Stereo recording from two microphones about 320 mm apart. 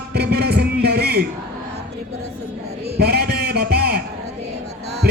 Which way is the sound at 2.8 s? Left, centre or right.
Right.